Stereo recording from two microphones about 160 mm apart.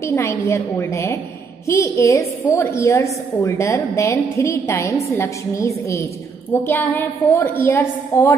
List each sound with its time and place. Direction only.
0.0 s a woman's voice: 15° left (ahead or behind)